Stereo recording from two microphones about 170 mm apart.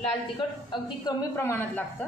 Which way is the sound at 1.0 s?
15° left (ahead or behind).